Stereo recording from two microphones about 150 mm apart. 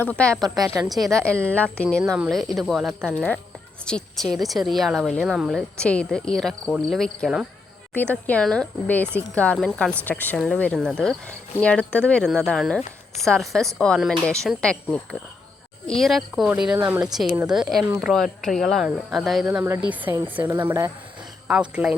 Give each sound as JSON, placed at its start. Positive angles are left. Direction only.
{"t": 0.0, "sound": "speech", "side_deg": 10}
{"t": 0.4, "sound": "speech", "side_deg": -25}
{"t": 1.0, "sound": "a woman's voice", "side_deg": 5}
{"t": 19.5, "sound": "speech", "side_deg": -15}